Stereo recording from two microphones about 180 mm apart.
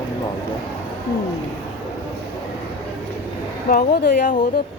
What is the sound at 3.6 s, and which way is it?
Speech, 55° left (ahead or behind).